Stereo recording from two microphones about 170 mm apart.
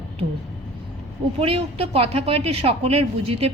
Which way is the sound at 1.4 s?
35° right (ahead or behind).